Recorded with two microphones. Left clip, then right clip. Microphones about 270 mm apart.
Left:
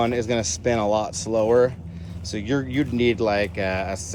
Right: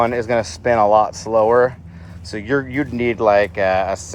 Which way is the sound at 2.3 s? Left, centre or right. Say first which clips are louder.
Right 5 dB; right.